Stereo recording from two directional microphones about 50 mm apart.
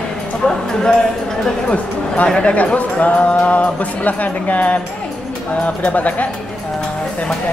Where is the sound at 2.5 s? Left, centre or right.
Left.